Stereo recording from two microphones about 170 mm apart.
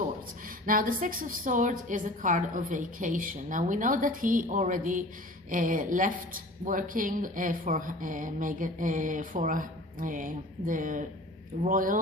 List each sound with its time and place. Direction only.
0.4 s speech: 55° right (ahead or behind)